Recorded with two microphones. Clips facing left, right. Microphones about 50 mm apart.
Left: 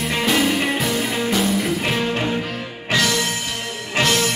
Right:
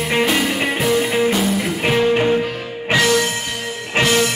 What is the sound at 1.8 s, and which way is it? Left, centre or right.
Music, centre.